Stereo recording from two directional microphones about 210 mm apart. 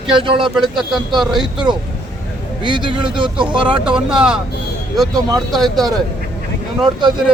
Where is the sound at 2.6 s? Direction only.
20° right (ahead or behind).